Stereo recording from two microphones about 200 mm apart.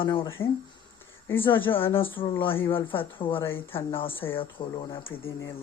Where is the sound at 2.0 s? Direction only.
25° left (ahead or behind).